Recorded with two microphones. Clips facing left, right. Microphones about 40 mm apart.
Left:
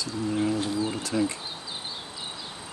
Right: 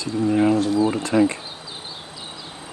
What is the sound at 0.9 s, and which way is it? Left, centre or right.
Bee, right.